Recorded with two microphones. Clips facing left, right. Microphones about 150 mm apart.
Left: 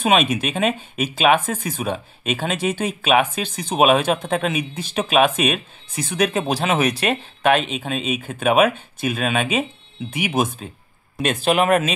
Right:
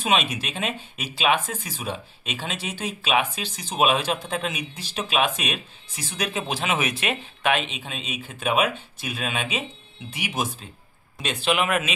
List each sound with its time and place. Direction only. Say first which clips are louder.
0.0 s speech: left 6 dB; 55° left (ahead or behind)
11.2 s speech: left 6 dB; 40° left (ahead or behind)